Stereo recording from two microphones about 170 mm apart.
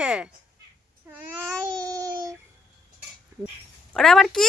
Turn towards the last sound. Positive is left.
turn(degrees=0)  # may be behind; listen again after turning